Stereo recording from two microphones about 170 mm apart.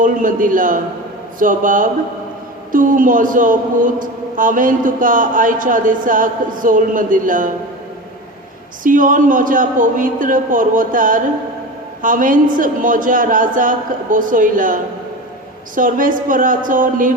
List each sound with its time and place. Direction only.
0.0 s a man's voice: 50° right (ahead or behind)
8.8 s a man's voice: 50° right (ahead or behind)